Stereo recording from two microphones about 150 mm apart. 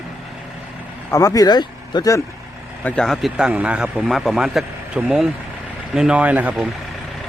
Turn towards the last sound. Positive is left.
turn(degrees=0)  # may be behind; listen again after turning